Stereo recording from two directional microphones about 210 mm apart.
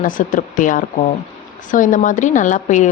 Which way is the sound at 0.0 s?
40° left (ahead or behind).